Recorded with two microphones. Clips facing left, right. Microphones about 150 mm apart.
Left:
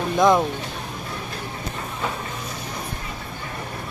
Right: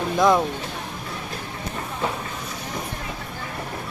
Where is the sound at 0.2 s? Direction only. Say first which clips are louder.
Left 1 dB; centre (ahead or behind).